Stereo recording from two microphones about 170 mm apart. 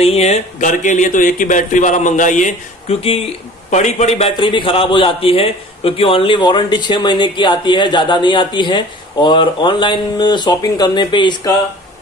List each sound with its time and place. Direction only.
0.0 s a man's voice: 40° left (ahead or behind)